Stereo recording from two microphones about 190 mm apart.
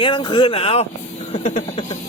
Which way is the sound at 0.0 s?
25° left (ahead or behind).